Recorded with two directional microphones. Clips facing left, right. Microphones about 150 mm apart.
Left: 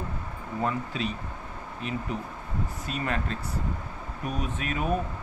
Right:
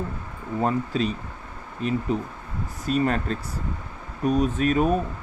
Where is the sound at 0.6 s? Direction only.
40° right (ahead or behind).